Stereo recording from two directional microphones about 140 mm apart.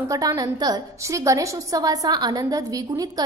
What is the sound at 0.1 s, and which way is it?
A woman's voice, 25° right (ahead or behind).